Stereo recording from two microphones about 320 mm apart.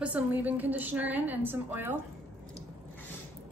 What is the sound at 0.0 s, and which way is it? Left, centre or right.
A woman's voice, centre.